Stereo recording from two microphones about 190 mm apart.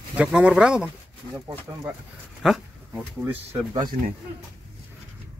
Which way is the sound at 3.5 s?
25° right (ahead or behind).